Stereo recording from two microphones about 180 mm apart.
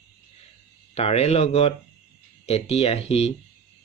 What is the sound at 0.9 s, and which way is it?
Speech, 35° left (ahead or behind).